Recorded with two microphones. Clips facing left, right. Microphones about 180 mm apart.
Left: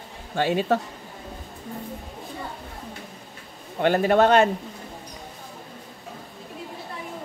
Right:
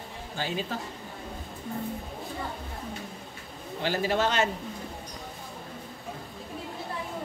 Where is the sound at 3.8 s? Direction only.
55° left (ahead or behind).